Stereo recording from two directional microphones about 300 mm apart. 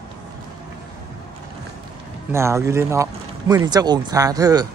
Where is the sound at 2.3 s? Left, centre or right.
Centre.